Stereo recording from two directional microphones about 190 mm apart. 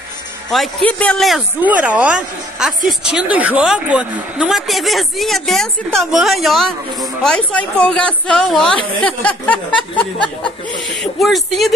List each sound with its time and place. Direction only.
0.5 s speech: centre (ahead or behind)